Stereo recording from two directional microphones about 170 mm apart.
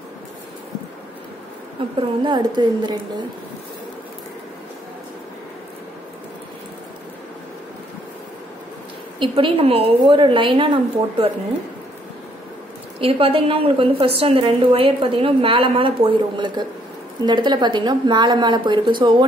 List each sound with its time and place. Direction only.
1.8 s a woman's voice: 30° right (ahead or behind)
9.2 s a woman's voice: 30° right (ahead or behind)
13.0 s a woman's voice: 35° right (ahead or behind)